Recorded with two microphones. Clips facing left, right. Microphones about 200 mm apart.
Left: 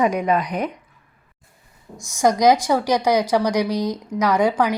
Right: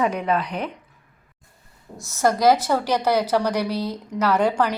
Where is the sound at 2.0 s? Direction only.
15° left (ahead or behind).